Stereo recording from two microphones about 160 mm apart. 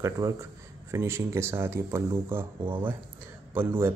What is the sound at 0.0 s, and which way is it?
A man's voice, 20° right (ahead or behind).